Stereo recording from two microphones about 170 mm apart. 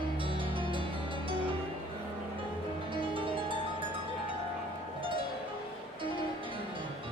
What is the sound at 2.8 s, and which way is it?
Music, 30° right (ahead or behind).